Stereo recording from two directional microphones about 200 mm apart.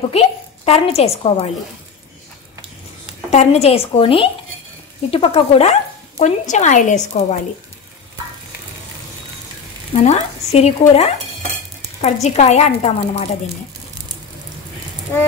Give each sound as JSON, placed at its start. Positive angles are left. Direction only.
{"t": 0.1, "sound": "a woman's voice", "side_deg": 30}
{"t": 3.3, "sound": "a woman's voice", "side_deg": 35}
{"t": 9.9, "sound": "speech", "side_deg": 35}